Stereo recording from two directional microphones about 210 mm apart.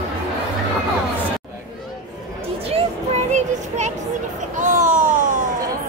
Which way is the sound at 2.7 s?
30° right (ahead or behind).